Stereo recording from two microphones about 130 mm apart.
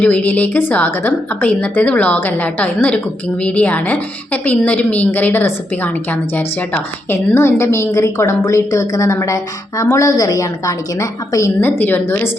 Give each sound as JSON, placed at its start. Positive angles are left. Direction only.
{"t": 0.0, "sound": "a woman's voice", "side_deg": 10}